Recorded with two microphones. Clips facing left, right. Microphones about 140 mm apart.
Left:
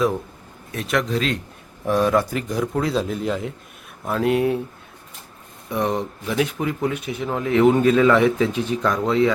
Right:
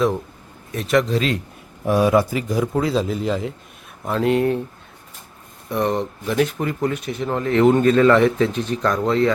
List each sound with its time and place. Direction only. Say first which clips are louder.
0.7 s speech: right 4 dB; centre (ahead or behind)
5.7 s speech: right 2 dB; centre (ahead or behind)